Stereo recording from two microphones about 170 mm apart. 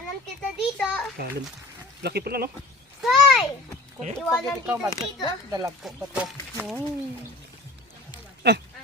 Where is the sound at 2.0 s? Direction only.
70° right (ahead or behind).